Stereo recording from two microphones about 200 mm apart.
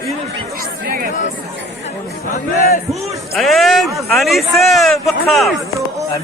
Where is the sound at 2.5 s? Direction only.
35° left (ahead or behind).